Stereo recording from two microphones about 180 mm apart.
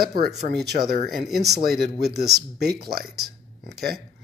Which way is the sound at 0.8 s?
40° right (ahead or behind).